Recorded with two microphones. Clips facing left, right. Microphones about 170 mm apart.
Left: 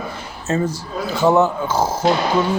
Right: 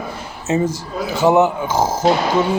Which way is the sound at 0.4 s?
20° right (ahead or behind).